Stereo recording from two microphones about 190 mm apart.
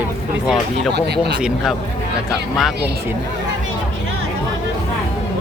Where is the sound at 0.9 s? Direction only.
60° right (ahead or behind).